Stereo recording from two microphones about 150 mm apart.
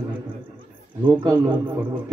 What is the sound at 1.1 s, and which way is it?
Speech, 30° right (ahead or behind).